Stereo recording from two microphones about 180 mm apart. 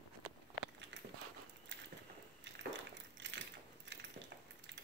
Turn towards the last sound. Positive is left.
turn(degrees=-85)